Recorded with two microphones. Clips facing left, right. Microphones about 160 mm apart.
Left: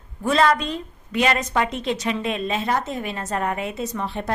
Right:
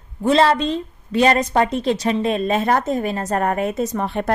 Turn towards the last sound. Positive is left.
turn(degrees=-55)  # may be behind; listen again after turning